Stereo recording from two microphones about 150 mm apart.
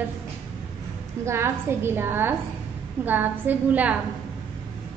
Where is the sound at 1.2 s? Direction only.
15° right (ahead or behind).